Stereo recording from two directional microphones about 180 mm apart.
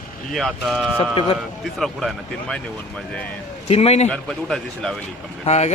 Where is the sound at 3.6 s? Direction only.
35° left (ahead or behind).